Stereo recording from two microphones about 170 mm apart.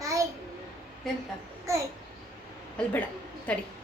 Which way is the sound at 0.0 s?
20° right (ahead or behind).